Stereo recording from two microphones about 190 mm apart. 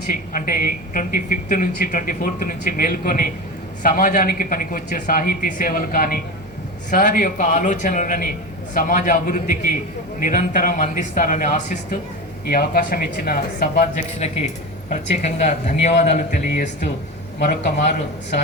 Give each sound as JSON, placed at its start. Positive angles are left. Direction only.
{"t": 0.1, "sound": "speech", "side_deg": 45}
{"t": 12.5, "sound": "speech", "side_deg": 50}
{"t": 14.2, "sound": "speech", "side_deg": 35}